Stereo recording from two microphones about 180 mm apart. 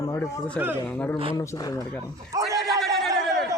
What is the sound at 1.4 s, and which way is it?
Speech, 20° left (ahead or behind).